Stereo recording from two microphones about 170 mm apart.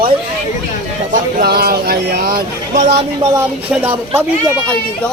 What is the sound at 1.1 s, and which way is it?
Speech, 60° right (ahead or behind).